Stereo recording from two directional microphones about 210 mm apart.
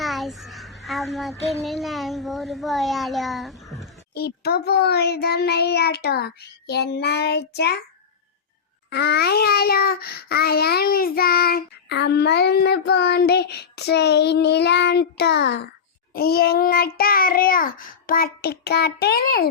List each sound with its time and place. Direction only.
0.0 s a sound: centre (ahead or behind)
1.6 s a child's voice: centre (ahead or behind)
4.1 s child singing: 50° left (ahead or behind)
8.9 s child singing: 50° left (ahead or behind)